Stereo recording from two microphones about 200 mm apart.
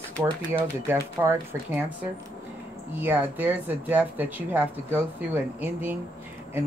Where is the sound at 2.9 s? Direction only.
10° right (ahead or behind).